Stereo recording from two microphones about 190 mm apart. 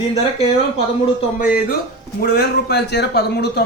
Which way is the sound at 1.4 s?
45° left (ahead or behind).